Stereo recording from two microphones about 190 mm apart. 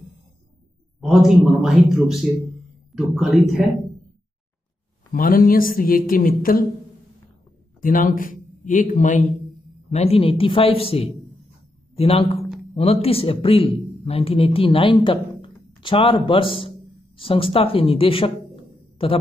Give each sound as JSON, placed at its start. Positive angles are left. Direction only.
{"t": 1.0, "sound": "a man's voice", "side_deg": 0}
{"t": 5.1, "sound": "speech", "side_deg": 45}
{"t": 7.8, "sound": "a man's voice", "side_deg": 45}